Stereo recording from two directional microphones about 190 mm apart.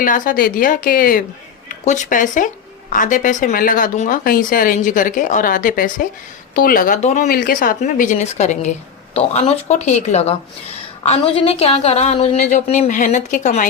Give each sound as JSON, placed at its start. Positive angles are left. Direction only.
{"t": 0.0, "sound": "a woman's voice", "side_deg": 45}